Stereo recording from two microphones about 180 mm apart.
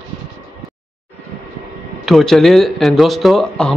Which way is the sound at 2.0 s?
Centre (ahead or behind).